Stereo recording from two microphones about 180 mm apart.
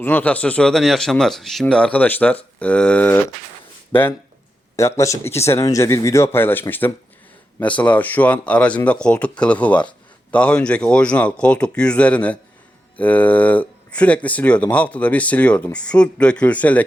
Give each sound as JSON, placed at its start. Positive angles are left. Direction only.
{"t": 0.0, "sound": "speech", "side_deg": 10}
{"t": 4.8, "sound": "speech", "side_deg": 15}